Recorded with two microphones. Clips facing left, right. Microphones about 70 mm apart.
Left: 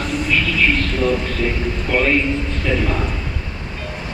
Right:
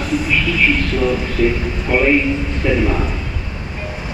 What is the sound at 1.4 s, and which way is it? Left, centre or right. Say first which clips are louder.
A man's voice: right 4 dB; right.